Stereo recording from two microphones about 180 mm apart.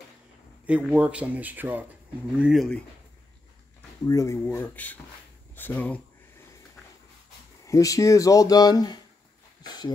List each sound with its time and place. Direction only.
0.7 s speech: 5° right (ahead or behind)
4.1 s speech: 15° left (ahead or behind)
7.6 s speech: 20° left (ahead or behind)